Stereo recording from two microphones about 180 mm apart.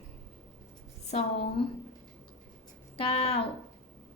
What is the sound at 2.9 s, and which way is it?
Speech, 30° left (ahead or behind).